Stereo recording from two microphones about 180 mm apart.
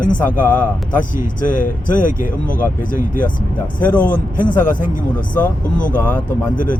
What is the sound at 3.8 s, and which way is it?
Speech, 10° left (ahead or behind).